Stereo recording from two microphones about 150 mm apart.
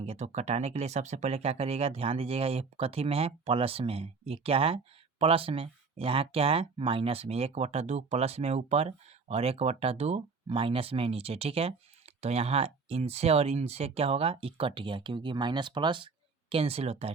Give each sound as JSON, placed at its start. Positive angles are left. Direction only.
{"t": 0.0, "sound": "speech", "side_deg": -45}